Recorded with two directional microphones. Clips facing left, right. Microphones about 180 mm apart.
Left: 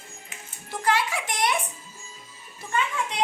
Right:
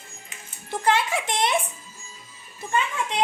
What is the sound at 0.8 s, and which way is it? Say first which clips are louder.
Speech: right 2 dB; 25° right (ahead or behind).